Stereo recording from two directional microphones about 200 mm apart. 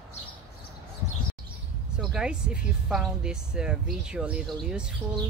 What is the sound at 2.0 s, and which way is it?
Speech, 5° right (ahead or behind).